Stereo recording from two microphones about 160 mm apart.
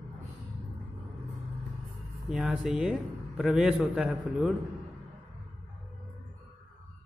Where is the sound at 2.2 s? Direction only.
5° right (ahead or behind).